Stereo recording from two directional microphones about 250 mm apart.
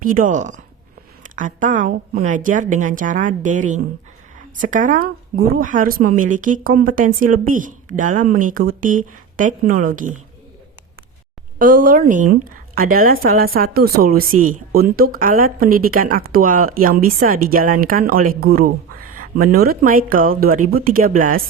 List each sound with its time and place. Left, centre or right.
0.0 s speech: right
11.6 s speech: right